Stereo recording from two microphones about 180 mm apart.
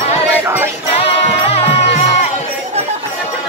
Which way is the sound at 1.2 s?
35° left (ahead or behind).